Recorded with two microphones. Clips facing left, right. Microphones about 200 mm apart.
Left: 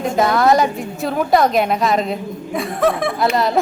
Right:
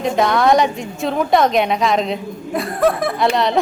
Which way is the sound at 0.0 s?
Centre (ahead or behind).